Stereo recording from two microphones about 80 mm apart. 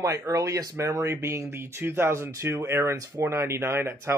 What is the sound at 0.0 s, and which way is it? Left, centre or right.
Speech, right.